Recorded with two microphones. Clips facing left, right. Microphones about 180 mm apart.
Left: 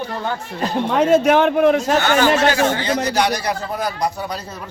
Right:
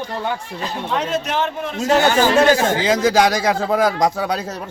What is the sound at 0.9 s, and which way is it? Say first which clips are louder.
Speech: left 9 dB; 50° left (ahead or behind).